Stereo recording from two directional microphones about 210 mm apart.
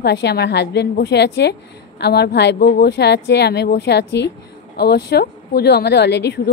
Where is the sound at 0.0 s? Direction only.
55° left (ahead or behind).